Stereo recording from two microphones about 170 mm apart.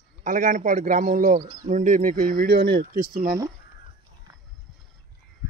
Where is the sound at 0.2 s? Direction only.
50° right (ahead or behind).